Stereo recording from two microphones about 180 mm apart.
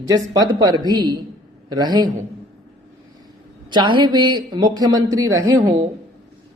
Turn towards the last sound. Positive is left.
turn(degrees=-20)  # may be behind; listen again after turning